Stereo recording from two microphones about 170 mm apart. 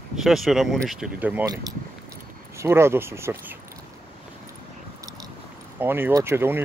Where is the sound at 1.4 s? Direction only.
20° right (ahead or behind).